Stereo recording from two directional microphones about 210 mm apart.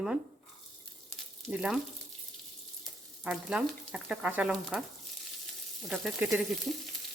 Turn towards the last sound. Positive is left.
turn(degrees=-5)  # may be behind; listen again after turning